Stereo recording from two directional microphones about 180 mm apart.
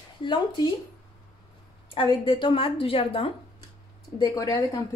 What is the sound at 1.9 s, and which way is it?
A woman's voice, 30° left (ahead or behind).